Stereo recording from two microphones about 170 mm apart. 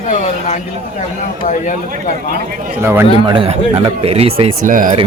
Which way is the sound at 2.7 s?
10° right (ahead or behind).